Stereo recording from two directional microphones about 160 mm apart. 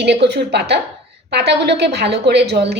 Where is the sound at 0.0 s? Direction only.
90° right.